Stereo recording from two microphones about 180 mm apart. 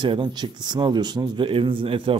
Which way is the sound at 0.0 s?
25° right (ahead or behind).